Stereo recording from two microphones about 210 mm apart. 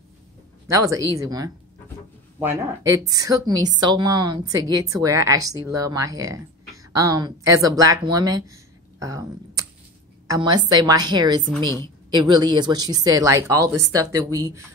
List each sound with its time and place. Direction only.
0.7 s a woman's voice: 15° right (ahead or behind)